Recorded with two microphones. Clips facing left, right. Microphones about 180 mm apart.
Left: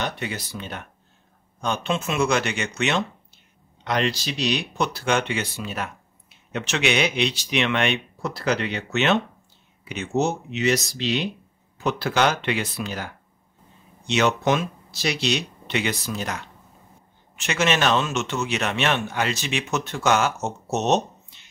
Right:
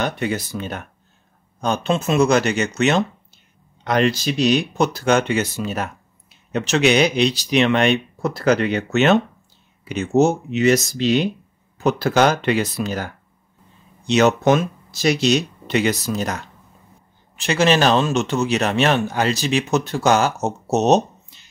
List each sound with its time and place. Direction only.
0.0 s speech: 50° right (ahead or behind)